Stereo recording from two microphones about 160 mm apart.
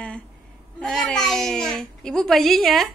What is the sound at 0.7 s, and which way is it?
A child's voice, 5° left (ahead or behind).